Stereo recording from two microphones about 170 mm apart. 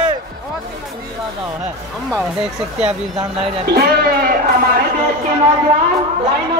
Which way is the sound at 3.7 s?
65° right (ahead or behind).